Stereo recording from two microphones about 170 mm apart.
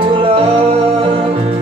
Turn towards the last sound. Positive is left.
turn(degrees=-35)  # may be behind; listen again after turning